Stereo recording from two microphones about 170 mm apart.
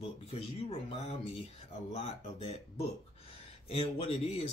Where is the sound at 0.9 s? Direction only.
35° left (ahead or behind).